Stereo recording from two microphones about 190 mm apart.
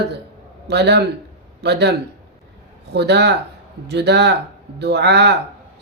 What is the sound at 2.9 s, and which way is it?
Speech, 60° right (ahead or behind).